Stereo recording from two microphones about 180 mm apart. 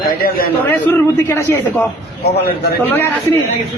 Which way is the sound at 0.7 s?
10° left (ahead or behind).